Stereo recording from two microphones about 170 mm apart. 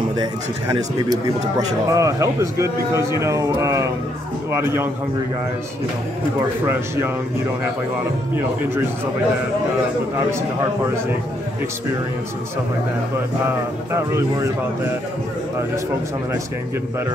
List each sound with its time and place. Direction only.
0.2 s a man's voice: 20° right (ahead or behind)
13.5 s speech: 15° right (ahead or behind)